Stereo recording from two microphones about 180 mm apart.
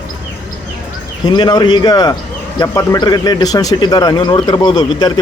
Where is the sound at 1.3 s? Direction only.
25° left (ahead or behind).